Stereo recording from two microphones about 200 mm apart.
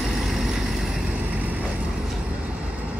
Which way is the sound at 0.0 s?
Centre (ahead or behind).